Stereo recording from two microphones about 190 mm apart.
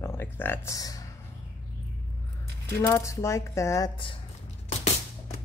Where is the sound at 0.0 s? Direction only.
10° left (ahead or behind).